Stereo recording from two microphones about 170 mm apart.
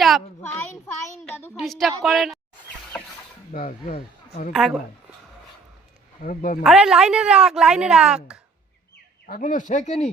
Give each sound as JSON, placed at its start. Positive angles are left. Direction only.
{"t": 0.4, "sound": "a child's voice", "side_deg": 15}
{"t": 1.2, "sound": "a sound", "side_deg": 10}
{"t": 1.5, "sound": "a woman's voice", "side_deg": 0}
{"t": 3.5, "sound": "speech", "side_deg": 55}
{"t": 4.5, "sound": "a woman's voice", "side_deg": 0}
{"t": 6.2, "sound": "speech", "side_deg": 55}
{"t": 6.6, "sound": "a woman's voice", "side_deg": -5}
{"t": 9.2, "sound": "speech", "side_deg": 50}